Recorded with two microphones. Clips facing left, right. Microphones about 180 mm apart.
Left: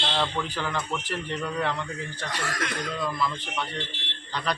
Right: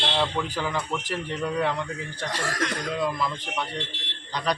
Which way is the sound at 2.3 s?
35° right (ahead or behind).